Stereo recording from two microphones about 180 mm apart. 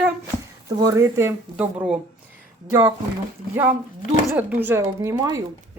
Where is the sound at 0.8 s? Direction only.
15° right (ahead or behind).